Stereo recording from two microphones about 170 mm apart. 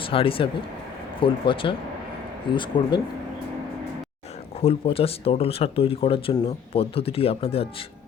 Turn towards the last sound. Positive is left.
turn(degrees=35)  # may be behind; listen again after turning